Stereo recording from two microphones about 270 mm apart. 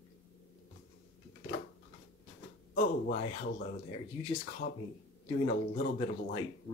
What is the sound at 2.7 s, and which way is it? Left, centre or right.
Speech, left.